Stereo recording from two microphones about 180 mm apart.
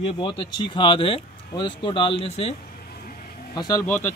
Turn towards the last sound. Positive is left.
turn(degrees=15)  # may be behind; listen again after turning